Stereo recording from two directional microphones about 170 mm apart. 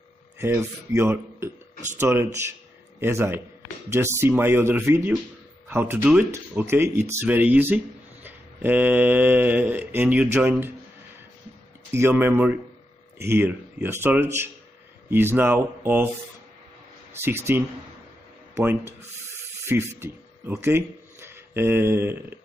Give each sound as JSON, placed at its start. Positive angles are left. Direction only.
{"t": 0.4, "sound": "speech", "side_deg": -15}
{"t": 11.9, "sound": "speech", "side_deg": -15}
{"t": 17.1, "sound": "speech", "side_deg": -15}